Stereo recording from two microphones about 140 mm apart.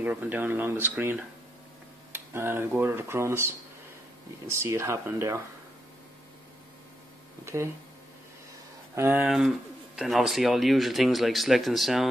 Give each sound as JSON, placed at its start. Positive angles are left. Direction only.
{"t": 0.0, "sound": "speech", "side_deg": -10}
{"t": 7.4, "sound": "speech", "side_deg": -20}
{"t": 8.9, "sound": "speech", "side_deg": -15}
{"t": 9.3, "sound": "speech", "side_deg": 0}